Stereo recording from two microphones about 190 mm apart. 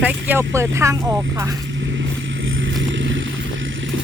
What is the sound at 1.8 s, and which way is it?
Vehicle, 80° right.